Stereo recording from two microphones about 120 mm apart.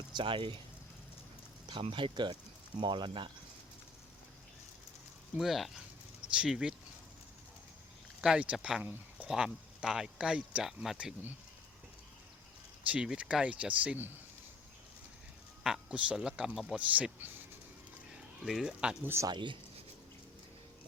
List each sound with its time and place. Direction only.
0.1 s speech: 45° right (ahead or behind)
1.6 s speech: 45° right (ahead or behind)
5.4 s speech: centre (ahead or behind)
8.2 s speech: 10° right (ahead or behind)
9.2 s speech: 5° right (ahead or behind)
12.9 s speech: 10° right (ahead or behind)
15.6 s speech: 5° right (ahead or behind)
18.1 s speech: 5° right (ahead or behind)
19.0 s speech: 20° right (ahead or behind)
19.3 s speech: 40° right (ahead or behind)